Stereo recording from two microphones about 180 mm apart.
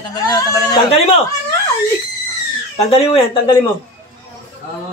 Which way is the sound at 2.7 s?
35° left (ahead or behind).